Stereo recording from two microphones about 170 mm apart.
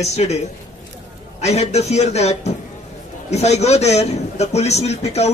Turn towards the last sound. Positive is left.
turn(degrees=40)  # may be behind; listen again after turning